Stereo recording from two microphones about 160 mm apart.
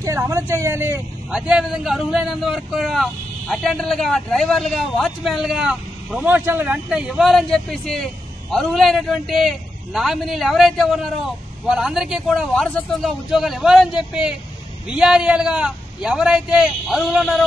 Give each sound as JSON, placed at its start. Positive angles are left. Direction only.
{"t": 0.0, "sound": "speech", "side_deg": -20}
{"t": 1.3, "sound": "a man's voice", "side_deg": -5}